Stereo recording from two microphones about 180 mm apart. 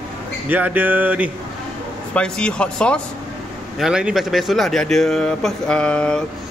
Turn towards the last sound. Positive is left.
turn(degrees=5)  # may be behind; listen again after turning